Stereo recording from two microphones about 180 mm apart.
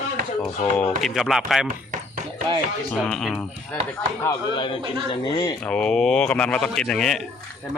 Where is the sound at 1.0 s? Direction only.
Centre (ahead or behind).